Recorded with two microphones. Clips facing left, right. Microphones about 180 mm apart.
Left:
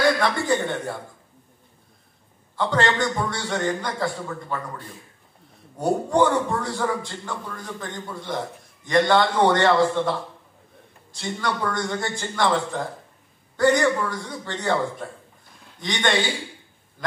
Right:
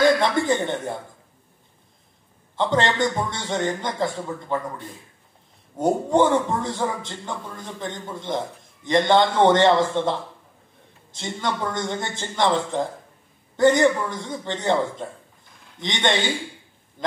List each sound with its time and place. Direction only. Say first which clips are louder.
0.0 s speech: right 3 dB; 20° right (ahead or behind)
2.5 s speech: right 1 dB; 20° right (ahead or behind)